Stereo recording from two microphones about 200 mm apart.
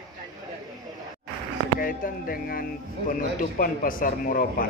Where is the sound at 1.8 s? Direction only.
45° left (ahead or behind).